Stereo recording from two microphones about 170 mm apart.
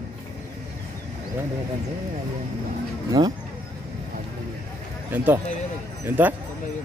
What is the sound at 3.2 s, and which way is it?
Speech, 25° right (ahead or behind).